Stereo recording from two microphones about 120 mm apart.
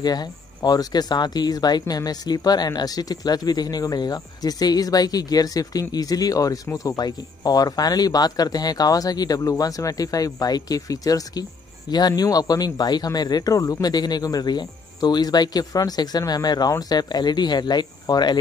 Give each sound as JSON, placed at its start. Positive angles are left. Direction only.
{"t": 0.0, "sound": "speech", "side_deg": 35}